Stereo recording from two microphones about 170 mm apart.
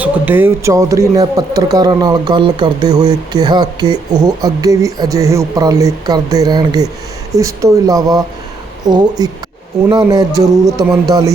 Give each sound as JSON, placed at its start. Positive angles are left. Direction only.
{"t": 0.0, "sound": "speech", "side_deg": -10}